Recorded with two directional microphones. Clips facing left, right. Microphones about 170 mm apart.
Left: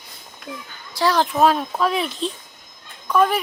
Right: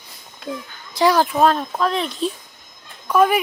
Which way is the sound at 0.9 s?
15° right (ahead or behind).